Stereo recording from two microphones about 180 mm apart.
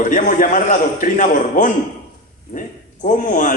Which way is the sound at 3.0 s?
45° left (ahead or behind).